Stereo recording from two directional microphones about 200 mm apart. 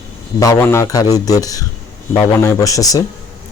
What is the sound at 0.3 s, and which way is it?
Speech, 15° left (ahead or behind).